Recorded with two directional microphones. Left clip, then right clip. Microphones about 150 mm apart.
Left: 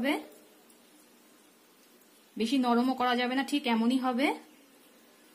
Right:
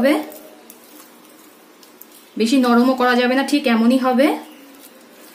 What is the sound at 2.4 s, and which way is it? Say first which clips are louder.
Speech: right 12 dB; 50° left (ahead or behind).